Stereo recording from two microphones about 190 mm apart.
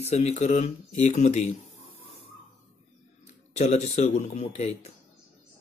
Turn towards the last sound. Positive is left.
turn(degrees=35)  # may be behind; listen again after turning